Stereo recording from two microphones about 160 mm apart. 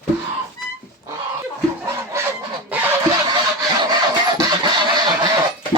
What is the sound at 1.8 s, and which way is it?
Chicken, 15° right (ahead or behind).